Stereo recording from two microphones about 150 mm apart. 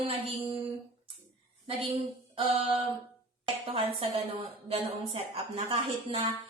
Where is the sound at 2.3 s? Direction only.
40° right (ahead or behind).